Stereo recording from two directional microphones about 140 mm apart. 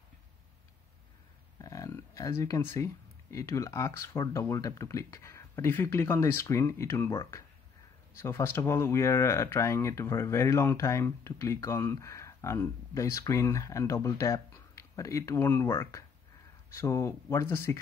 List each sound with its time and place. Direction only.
1.6 s speech: 25° left (ahead or behind)